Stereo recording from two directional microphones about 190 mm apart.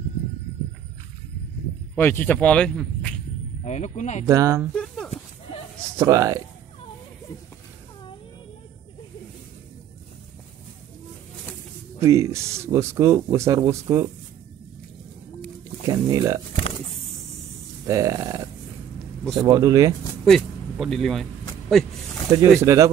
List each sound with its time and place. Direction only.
2.0 s speech: 10° left (ahead or behind)
3.6 s speech: 35° left (ahead or behind)
4.3 s speech: 15° right (ahead or behind)
4.7 s a sound: 5° left (ahead or behind)
5.9 s speech: 15° right (ahead or behind)
12.0 s speech: 15° right (ahead or behind)
15.9 s speech: 20° right (ahead or behind)
17.8 s speech: 15° right (ahead or behind)
20.2 s a sound: centre (ahead or behind)
22.3 s speech: 15° right (ahead or behind)